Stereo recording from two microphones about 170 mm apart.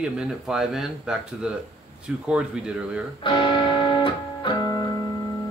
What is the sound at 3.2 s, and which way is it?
Music, 30° left (ahead or behind).